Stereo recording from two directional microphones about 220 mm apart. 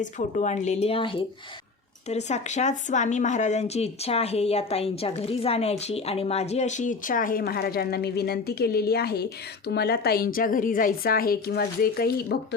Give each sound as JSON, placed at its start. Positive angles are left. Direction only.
{"t": 0.0, "sound": "speech", "side_deg": 35}